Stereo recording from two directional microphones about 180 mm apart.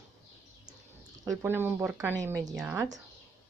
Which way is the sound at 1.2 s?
10° right (ahead or behind).